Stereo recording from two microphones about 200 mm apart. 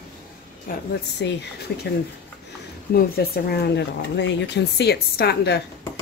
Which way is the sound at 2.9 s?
50° left (ahead or behind).